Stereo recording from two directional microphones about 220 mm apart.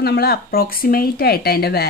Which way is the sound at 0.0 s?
45° left (ahead or behind).